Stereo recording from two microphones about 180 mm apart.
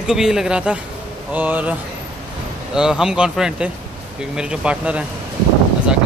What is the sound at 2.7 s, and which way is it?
A man's voice, 5° right (ahead or behind).